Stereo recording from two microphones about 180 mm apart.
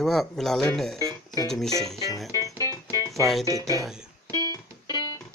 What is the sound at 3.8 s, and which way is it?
Speech, 5° right (ahead or behind).